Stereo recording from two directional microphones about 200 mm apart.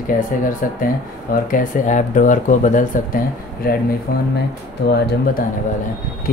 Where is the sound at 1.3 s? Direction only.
45° left (ahead or behind).